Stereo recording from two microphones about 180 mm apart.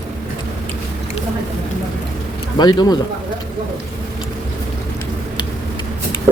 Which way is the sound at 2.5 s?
25° left (ahead or behind).